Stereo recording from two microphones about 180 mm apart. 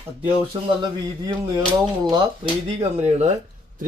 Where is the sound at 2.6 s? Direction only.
35° right (ahead or behind).